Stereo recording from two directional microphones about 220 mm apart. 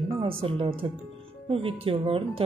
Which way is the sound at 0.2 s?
25° right (ahead or behind).